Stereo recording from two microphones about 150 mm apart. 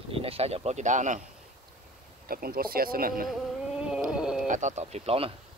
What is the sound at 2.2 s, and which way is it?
Speech, 80° right.